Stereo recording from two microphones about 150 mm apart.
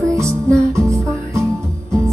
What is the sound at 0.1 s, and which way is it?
Music, 20° right (ahead or behind).